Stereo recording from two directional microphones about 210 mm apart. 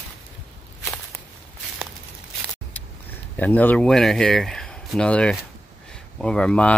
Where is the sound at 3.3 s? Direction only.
10° left (ahead or behind).